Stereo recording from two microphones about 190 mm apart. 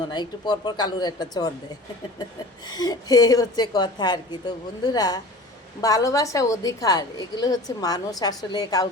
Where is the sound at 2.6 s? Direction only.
20° left (ahead or behind).